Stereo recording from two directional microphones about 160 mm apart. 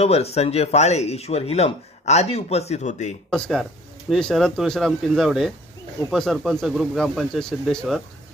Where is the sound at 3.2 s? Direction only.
5° left (ahead or behind).